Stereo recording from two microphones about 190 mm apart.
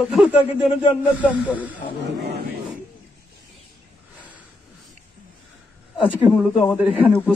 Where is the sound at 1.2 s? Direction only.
10° right (ahead or behind).